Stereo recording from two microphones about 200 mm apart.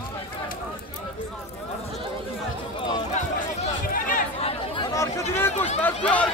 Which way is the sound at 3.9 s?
45° left (ahead or behind).